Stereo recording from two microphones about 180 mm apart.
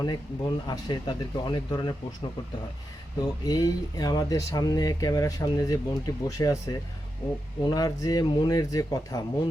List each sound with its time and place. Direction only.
0.0 s speech: 25° left (ahead or behind)
3.4 s speech: 20° left (ahead or behind)